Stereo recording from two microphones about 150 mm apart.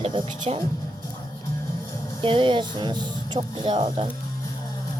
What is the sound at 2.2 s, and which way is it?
Speech, 35° right (ahead or behind).